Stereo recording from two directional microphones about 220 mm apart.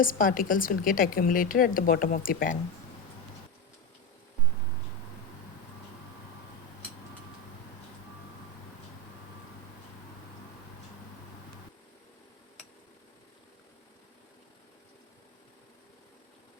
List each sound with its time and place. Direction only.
0.0 s a woman's voice: 40° left (ahead or behind)